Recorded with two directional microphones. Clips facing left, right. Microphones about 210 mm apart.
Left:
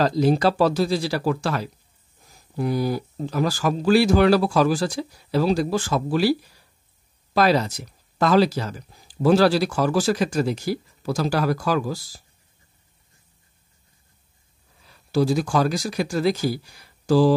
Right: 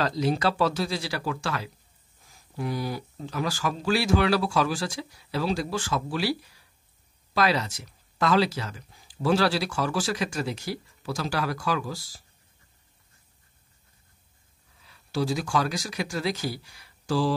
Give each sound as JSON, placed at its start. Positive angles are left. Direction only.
{"t": 0.0, "sound": "speech", "side_deg": 40}
{"t": 7.3, "sound": "speech", "side_deg": 40}
{"t": 14.9, "sound": "speech", "side_deg": 40}